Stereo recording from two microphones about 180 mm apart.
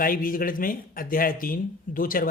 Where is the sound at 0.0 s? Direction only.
50° left (ahead or behind).